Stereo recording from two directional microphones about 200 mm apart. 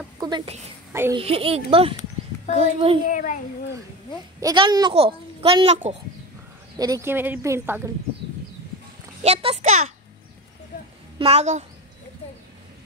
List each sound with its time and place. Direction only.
1.1 s a woman's voice: 30° right (ahead or behind)
3.1 s a child's voice: 40° left (ahead or behind)
4.4 s a woman's voice: 20° right (ahead or behind)
6.8 s speech: 15° right (ahead or behind)
9.2 s a child's voice: 30° right (ahead or behind)
11.1 s a woman's voice: 30° right (ahead or behind)